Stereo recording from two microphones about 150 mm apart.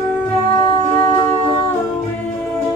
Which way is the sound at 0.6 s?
25° left (ahead or behind).